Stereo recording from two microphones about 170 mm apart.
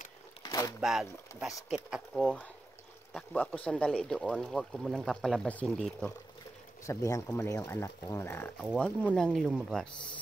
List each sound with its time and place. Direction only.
0.4 s a sound: 20° left (ahead or behind)
0.7 s speech: centre (ahead or behind)
6.9 s a man's voice: 20° left (ahead or behind); by 10.0 s centre (ahead or behind)